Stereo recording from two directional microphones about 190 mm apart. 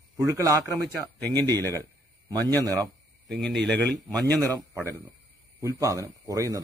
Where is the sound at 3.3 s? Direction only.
Centre (ahead or behind).